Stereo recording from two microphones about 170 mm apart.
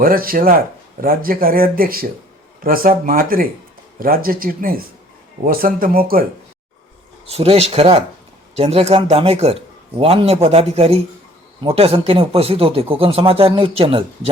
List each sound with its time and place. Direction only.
0.0 s speech: 60° right (ahead or behind)
7.3 s a man's voice: 35° right (ahead or behind)